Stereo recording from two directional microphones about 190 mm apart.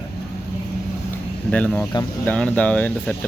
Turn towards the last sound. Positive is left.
turn(degrees=5)  # may be behind; listen again after turning